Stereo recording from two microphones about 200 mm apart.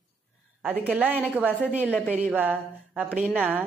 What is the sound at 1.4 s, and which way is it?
Speech, 5° left (ahead or behind).